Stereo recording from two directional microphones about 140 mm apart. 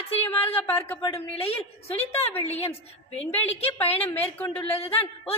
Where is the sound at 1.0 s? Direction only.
40° left (ahead or behind).